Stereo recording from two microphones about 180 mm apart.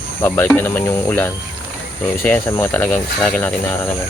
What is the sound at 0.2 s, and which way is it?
Speech, 10° left (ahead or behind).